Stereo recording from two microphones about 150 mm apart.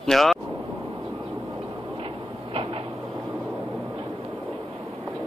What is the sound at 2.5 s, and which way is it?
Train, 40° right (ahead or behind).